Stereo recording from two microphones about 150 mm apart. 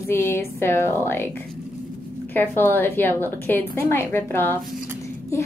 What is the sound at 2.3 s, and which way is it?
A woman's voice, 10° left (ahead or behind).